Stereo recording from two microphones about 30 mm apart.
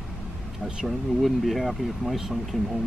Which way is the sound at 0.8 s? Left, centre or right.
Centre.